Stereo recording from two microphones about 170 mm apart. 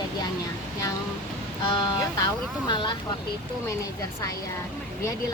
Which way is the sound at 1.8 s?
25° left (ahead or behind).